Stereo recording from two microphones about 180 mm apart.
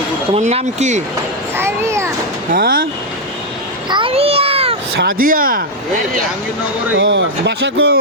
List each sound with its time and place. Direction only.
0.3 s speech: 40° right (ahead or behind)
1.5 s children playing: 15° right (ahead or behind)
2.5 s speech: 55° right (ahead or behind)
3.8 s a sound: 25° right (ahead or behind)
4.9 s speech: 55° right (ahead or behind)
7.0 s speech: 85° right